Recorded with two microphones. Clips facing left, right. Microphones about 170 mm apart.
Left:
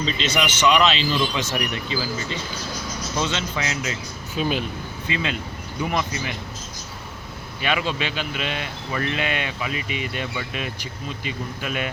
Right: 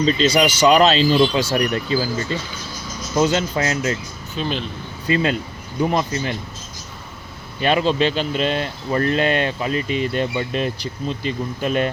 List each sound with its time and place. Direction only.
0.0 s speech: 40° right (ahead or behind)
4.4 s speech: 10° left (ahead or behind)
5.0 s speech: 40° right (ahead or behind)
7.6 s speech: 40° right (ahead or behind)
9.7 s speech: 10° left (ahead or behind)
10.2 s speech: 35° right (ahead or behind)
10.8 s speech: 10° left (ahead or behind)
11.6 s speech: 40° right (ahead or behind)